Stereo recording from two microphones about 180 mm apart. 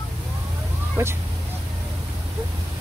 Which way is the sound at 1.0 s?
15° right (ahead or behind).